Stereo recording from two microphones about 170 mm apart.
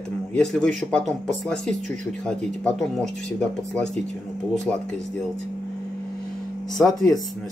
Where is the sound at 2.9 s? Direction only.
5° left (ahead or behind).